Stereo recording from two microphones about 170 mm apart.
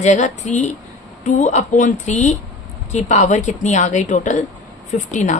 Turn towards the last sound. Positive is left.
turn(degrees=45)  # may be behind; listen again after turning